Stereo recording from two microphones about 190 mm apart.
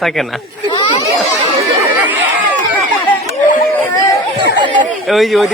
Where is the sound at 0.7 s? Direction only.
25° left (ahead or behind).